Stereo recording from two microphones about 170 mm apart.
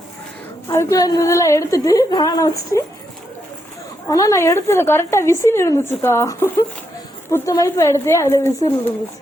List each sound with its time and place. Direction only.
0.7 s a woman's voice: 20° left (ahead or behind)
4.1 s speech: 20° left (ahead or behind)